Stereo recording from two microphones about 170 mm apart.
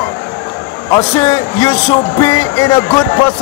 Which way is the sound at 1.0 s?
20° left (ahead or behind).